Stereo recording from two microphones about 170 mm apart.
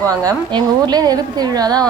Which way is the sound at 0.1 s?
20° right (ahead or behind).